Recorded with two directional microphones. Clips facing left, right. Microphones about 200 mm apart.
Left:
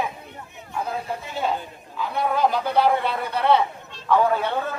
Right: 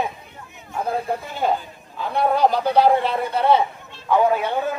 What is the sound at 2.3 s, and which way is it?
Speech, 40° right (ahead or behind).